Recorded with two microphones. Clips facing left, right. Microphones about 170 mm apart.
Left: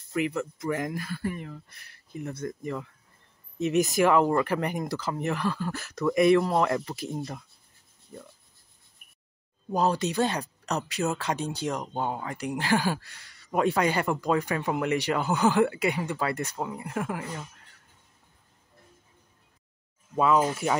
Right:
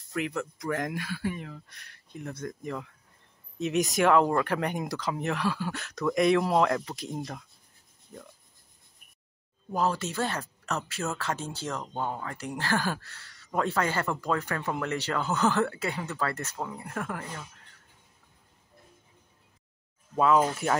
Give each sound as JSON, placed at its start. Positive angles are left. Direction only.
{"t": 0.1, "sound": "speech", "side_deg": 0}
{"t": 8.1, "sound": "rub", "side_deg": 0}
{"t": 9.7, "sound": "speech", "side_deg": 20}
{"t": 20.2, "sound": "speech", "side_deg": 5}